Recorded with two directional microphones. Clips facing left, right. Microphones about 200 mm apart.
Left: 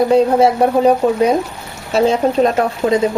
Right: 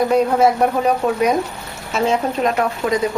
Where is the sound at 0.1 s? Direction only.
30° left (ahead or behind).